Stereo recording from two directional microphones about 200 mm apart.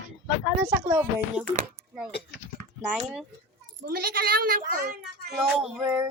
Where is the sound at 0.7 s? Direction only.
10° right (ahead or behind).